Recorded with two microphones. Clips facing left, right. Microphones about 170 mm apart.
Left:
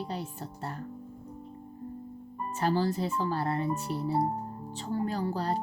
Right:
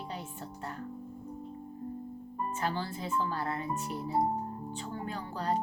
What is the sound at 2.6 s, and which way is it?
Speech, 40° left (ahead or behind).